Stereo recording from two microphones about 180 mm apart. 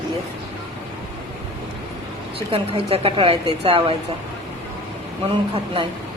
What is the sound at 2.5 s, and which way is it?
A woman's voice, 30° right (ahead or behind).